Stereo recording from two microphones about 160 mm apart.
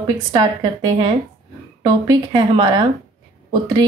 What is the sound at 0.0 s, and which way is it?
A woman's voice, 30° right (ahead or behind).